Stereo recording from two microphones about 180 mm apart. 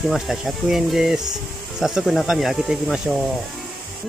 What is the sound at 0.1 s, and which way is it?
Speech, centre (ahead or behind).